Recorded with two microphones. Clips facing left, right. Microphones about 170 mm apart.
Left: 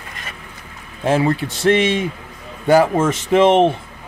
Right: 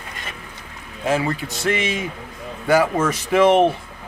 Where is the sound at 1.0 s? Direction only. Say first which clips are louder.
Left 4 dB; 30° left (ahead or behind).